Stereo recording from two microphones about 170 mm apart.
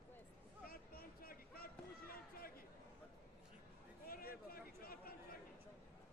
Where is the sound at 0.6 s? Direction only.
60° left (ahead or behind).